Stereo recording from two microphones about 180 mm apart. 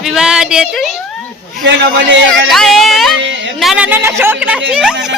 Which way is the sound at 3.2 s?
90° right.